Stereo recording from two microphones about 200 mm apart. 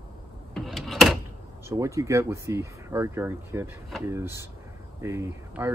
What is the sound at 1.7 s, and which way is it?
Speech, 15° right (ahead or behind).